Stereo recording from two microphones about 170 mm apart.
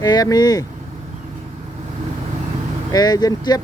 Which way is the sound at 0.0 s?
20° left (ahead or behind).